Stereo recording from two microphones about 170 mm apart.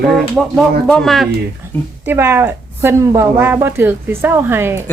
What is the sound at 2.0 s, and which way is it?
Speech, 15° right (ahead or behind).